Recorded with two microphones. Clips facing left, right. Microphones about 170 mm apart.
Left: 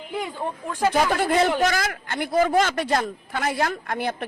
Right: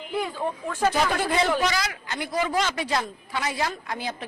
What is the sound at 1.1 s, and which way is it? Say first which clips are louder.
A man's voice: left 3 dB; 50° left (ahead or behind).